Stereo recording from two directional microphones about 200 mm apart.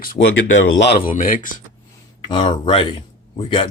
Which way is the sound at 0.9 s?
45° left (ahead or behind).